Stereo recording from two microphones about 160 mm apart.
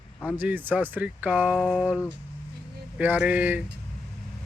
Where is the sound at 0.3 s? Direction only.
10° right (ahead or behind).